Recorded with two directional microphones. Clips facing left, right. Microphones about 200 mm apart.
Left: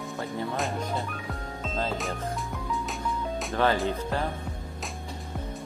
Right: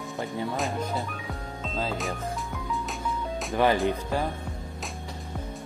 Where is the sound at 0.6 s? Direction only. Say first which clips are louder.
Right 1 dB; centre (ahead or behind).